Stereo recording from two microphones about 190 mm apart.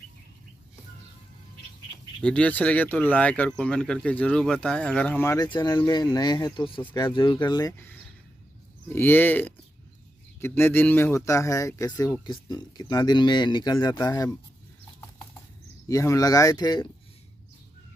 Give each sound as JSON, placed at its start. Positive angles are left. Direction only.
{"t": 2.2, "sound": "speech", "side_deg": 5}
{"t": 8.8, "sound": "speech", "side_deg": 10}
{"t": 15.9, "sound": "speech", "side_deg": 15}